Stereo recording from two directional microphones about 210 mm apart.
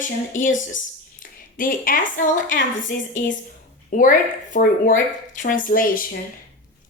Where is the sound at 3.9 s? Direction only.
40° left (ahead or behind).